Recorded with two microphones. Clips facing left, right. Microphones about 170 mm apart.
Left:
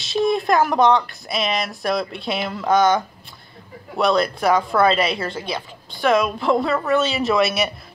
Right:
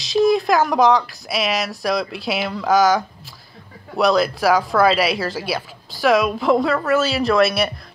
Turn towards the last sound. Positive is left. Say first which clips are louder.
# right 2 dB
turn(degrees=0)  # may be behind; listen again after turning